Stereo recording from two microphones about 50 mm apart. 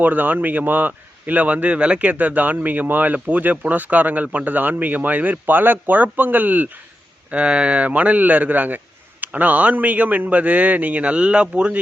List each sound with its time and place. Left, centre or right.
0.0 s speech: right
7.3 s speech: right